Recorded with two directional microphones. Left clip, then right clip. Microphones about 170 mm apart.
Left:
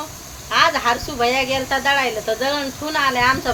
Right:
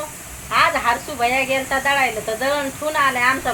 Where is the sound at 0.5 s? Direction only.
15° left (ahead or behind).